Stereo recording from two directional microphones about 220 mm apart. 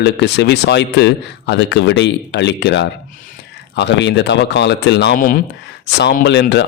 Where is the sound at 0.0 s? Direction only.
50° left (ahead or behind).